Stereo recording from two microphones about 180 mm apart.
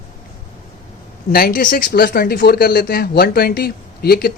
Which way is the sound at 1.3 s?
55° left (ahead or behind).